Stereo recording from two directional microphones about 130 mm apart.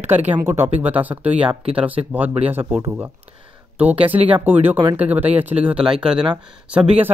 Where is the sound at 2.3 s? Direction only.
50° right (ahead or behind).